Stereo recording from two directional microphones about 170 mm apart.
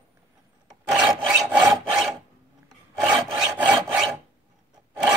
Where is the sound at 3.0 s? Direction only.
5° right (ahead or behind).